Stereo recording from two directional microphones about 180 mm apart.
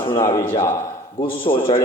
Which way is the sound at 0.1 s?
15° left (ahead or behind).